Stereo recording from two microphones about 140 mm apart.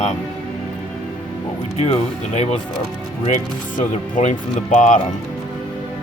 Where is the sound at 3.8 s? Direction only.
60° left (ahead or behind).